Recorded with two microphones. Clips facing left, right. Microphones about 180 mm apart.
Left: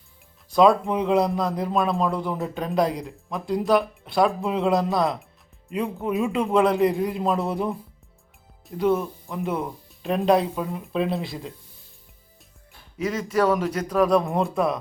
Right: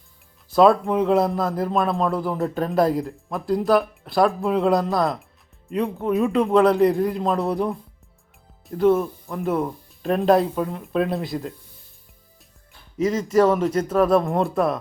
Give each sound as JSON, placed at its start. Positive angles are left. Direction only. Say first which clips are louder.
{"t": 0.5, "sound": "a man's voice", "louder": "right 2 dB", "side_deg": 0}
{"t": 13.1, "sound": "speech", "louder": "right 4 dB", "side_deg": -25}
{"t": 13.8, "sound": "a man's voice", "louder": "even", "side_deg": -5}